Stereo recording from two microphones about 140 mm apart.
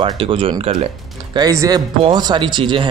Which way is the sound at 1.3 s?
25° right (ahead or behind).